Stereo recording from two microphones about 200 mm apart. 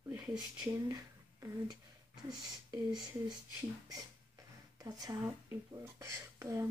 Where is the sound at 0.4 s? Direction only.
20° right (ahead or behind).